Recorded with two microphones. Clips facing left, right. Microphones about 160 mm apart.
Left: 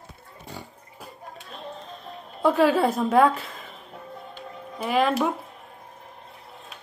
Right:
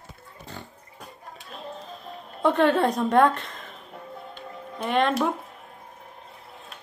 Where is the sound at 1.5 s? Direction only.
Centre (ahead or behind).